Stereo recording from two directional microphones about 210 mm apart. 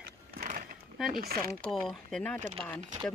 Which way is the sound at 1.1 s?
45° right (ahead or behind).